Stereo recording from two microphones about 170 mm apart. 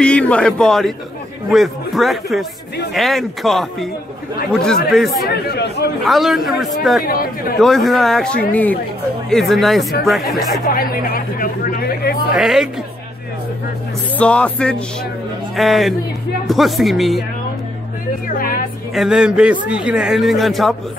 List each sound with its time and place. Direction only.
0.0 s a man's voice: 5° left (ahead or behind)
5.3 s speech: 75° left (ahead or behind)
6.0 s a man's voice: centre (ahead or behind)
10.7 s speech: 60° left (ahead or behind)
12.4 s a man's voice: centre (ahead or behind)
14.1 s a man's voice: 5° left (ahead or behind)
18.4 s a woman's voice: 55° left (ahead or behind)
18.9 s a man's voice: 5° right (ahead or behind)